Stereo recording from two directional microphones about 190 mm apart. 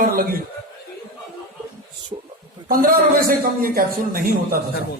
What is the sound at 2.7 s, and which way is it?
Speech, 50° right (ahead or behind).